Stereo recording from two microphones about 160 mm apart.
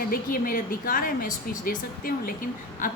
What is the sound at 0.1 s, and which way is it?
Speech, 65° left (ahead or behind).